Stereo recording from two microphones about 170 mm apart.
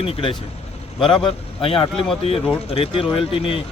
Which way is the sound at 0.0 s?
30° left (ahead or behind).